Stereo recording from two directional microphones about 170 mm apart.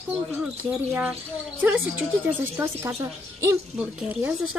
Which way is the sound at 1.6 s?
10° right (ahead or behind).